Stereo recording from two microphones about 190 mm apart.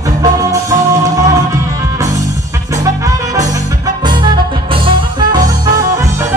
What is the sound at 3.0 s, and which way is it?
Music, 20° right (ahead or behind).